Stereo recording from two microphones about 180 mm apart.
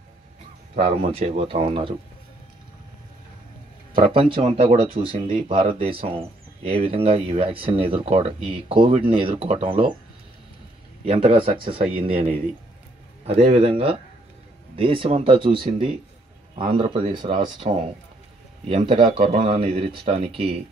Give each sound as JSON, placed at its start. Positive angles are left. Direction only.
{"t": 0.7, "sound": "speech", "side_deg": -35}
{"t": 4.1, "sound": "speech", "side_deg": -30}
{"t": 11.1, "sound": "speech", "side_deg": -30}
{"t": 13.4, "sound": "speech", "side_deg": -35}
{"t": 18.7, "sound": "speech", "side_deg": -30}